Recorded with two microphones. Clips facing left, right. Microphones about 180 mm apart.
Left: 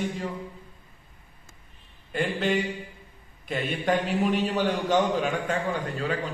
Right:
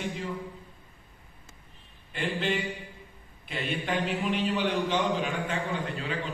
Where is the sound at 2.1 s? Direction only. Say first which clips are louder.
Left 4 dB; 45° left (ahead or behind).